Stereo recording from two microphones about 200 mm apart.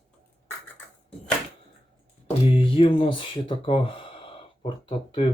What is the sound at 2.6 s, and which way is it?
Speech, 25° left (ahead or behind).